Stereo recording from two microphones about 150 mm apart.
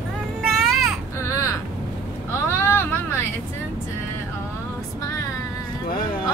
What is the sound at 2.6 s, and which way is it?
Vehicle, 15° left (ahead or behind).